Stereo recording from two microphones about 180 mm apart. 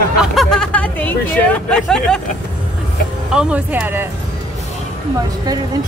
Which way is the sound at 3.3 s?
10° right (ahead or behind).